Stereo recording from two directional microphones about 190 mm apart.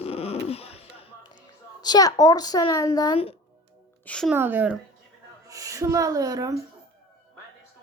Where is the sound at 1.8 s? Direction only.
20° left (ahead or behind).